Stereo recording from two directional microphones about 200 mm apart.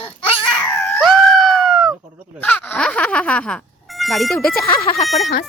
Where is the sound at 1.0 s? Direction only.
Centre (ahead or behind).